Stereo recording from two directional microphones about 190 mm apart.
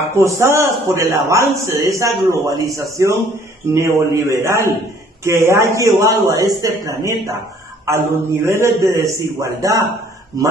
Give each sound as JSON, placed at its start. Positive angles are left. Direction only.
{"t": 0.1, "sound": "a man's voice", "side_deg": -15}